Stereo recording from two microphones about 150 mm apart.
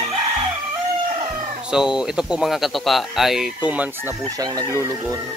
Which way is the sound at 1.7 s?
5° right (ahead or behind).